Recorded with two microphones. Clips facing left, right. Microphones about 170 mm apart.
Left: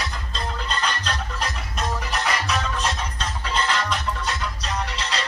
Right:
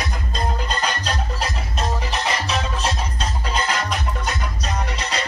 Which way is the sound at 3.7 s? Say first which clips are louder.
Right 1 dB; 45° right (ahead or behind).